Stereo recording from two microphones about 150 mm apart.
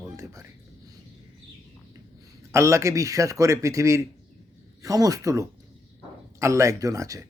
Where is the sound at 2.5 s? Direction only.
20° right (ahead or behind).